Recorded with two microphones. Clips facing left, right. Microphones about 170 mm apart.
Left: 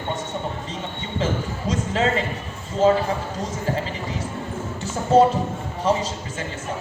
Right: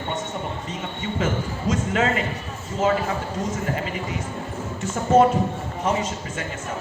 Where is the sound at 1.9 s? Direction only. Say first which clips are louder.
Left 2 dB; 30° left (ahead or behind).